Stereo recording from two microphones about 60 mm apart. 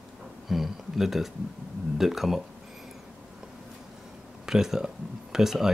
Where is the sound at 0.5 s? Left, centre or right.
Centre.